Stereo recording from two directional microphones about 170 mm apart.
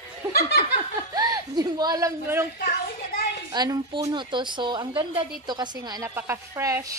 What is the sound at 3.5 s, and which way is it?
A woman's voice, 25° right (ahead or behind).